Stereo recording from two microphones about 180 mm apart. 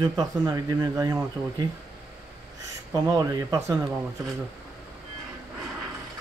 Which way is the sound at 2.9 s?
20° right (ahead or behind).